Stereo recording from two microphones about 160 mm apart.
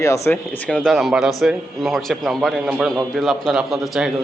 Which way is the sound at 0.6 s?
5° left (ahead or behind).